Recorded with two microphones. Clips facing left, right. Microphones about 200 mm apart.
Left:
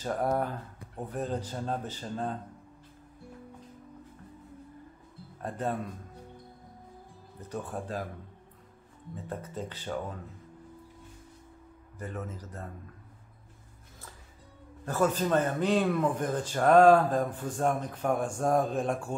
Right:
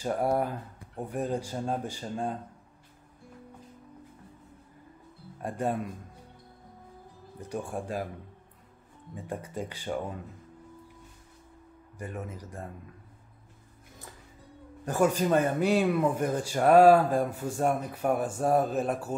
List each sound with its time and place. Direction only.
0.0 s a man's voice: 10° right (ahead or behind)
5.4 s a man's voice: 10° right (ahead or behind)
7.3 s a man's voice: 10° right (ahead or behind)
9.1 s a man's voice: 10° right (ahead or behind)
12.0 s a man's voice: 10° right (ahead or behind)
14.9 s a man's voice: 15° right (ahead or behind)